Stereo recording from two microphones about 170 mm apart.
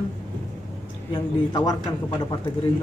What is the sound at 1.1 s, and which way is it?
A man's voice, 25° left (ahead or behind).